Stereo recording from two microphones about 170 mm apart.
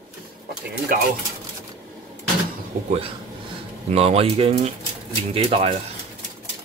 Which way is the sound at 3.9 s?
35° right (ahead or behind).